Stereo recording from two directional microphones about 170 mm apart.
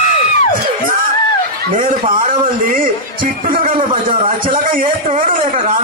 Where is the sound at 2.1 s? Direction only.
50° right (ahead or behind).